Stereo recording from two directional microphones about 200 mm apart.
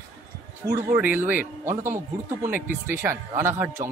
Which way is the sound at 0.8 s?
10° right (ahead or behind).